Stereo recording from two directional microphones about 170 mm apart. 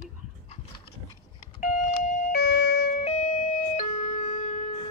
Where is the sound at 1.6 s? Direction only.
45° left (ahead or behind).